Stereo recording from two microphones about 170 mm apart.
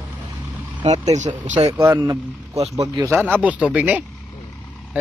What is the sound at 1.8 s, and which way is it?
Speech, 20° right (ahead or behind).